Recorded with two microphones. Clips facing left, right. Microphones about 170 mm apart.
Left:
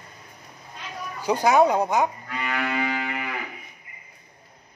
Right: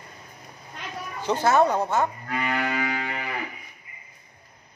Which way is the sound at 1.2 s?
10° left (ahead or behind).